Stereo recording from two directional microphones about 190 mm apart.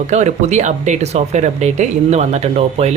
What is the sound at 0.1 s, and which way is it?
Speech, 35° right (ahead or behind).